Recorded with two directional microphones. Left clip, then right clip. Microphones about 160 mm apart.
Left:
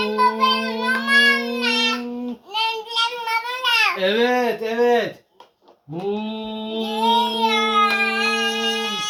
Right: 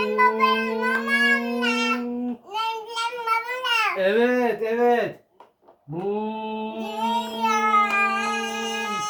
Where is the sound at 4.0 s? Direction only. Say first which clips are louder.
Left 2 dB; 30° left (ahead or behind).